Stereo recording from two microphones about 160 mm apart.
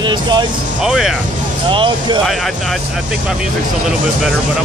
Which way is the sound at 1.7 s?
30° right (ahead or behind).